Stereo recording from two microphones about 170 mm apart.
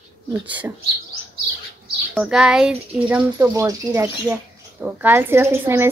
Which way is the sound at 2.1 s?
5° right (ahead or behind).